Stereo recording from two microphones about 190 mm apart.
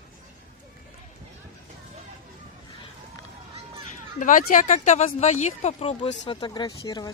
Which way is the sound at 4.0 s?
45° left (ahead or behind).